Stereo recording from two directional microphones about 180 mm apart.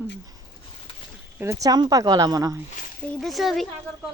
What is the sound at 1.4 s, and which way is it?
Speech, 15° right (ahead or behind).